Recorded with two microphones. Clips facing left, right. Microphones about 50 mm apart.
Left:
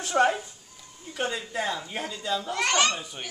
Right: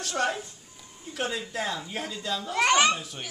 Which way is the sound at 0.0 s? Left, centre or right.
Centre.